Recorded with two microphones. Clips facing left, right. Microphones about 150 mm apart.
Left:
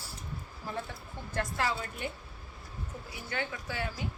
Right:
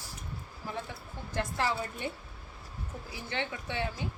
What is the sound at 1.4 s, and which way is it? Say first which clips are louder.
Speech: right 1 dB; 25° right (ahead or behind).